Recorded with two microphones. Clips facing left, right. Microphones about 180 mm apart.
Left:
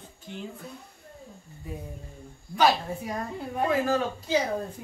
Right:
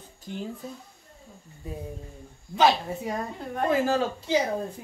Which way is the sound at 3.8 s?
30° right (ahead or behind).